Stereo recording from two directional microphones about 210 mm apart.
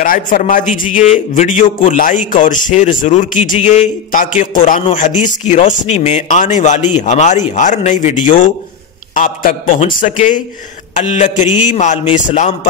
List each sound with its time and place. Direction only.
0.0 s a man's voice: 40° left (ahead or behind)